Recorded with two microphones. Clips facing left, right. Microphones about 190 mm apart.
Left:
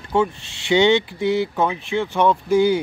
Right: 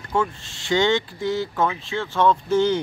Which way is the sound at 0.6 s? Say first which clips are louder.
Left 4 dB; 15° left (ahead or behind).